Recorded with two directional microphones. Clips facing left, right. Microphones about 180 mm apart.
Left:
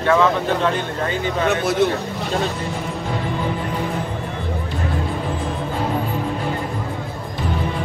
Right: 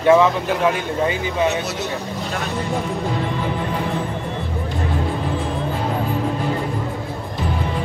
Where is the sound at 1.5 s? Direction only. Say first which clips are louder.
Left 5 dB; 55° left (ahead or behind).